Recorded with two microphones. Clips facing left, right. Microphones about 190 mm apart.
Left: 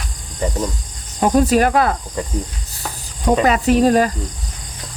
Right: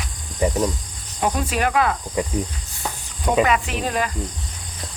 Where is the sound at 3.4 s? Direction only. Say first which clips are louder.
Left 9 dB; 40° left (ahead or behind).